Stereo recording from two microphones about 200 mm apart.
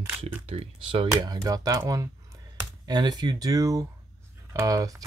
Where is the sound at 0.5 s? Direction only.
25° right (ahead or behind).